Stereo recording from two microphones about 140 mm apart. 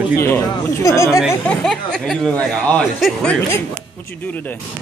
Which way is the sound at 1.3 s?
10° left (ahead or behind).